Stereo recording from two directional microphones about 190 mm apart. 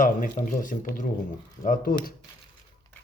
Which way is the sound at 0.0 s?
45° left (ahead or behind).